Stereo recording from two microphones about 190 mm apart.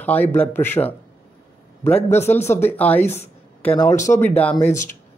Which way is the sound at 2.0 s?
15° left (ahead or behind).